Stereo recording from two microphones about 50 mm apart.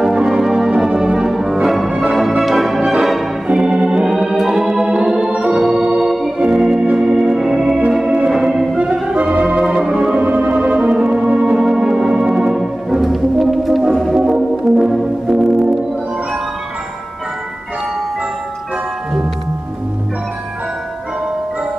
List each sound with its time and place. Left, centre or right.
0.0 s organ: centre
2.0 s music: centre
3.5 s organ: centre
4.4 s organ: centre
4.8 s organ: centre
5.7 s organ: right
8.1 s music: centre
8.4 s music: centre
8.9 s organ: centre
10.1 s organ: right
11.5 s music: centre
13.0 s music: centre
14.6 s organ: centre